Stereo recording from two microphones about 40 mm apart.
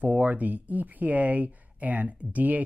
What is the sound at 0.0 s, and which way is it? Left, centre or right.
Speech, right.